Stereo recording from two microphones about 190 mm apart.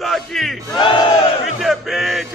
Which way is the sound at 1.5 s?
Centre (ahead or behind).